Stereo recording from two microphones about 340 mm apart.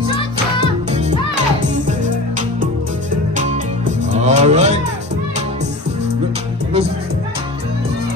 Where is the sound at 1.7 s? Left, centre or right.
Right.